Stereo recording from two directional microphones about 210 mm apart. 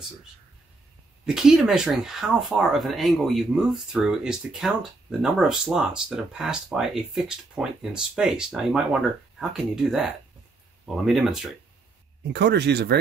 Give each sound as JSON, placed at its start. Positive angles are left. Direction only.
{"t": 1.2, "sound": "speech", "side_deg": 0}
{"t": 12.2, "sound": "speech", "side_deg": -55}